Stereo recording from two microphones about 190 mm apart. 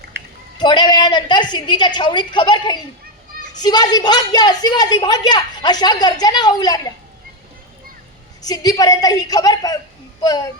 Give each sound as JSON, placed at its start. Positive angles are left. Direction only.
{"t": 0.1, "sound": "a sound", "side_deg": -60}
{"t": 0.6, "sound": "a woman's voice", "side_deg": 25}
{"t": 8.4, "sound": "a woman's voice", "side_deg": 20}